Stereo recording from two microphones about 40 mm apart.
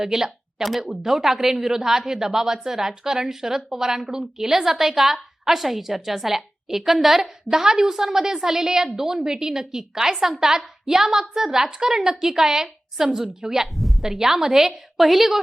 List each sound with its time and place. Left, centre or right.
0.0 s speech: centre
13.7 s a sound: centre
14.0 s speech: centre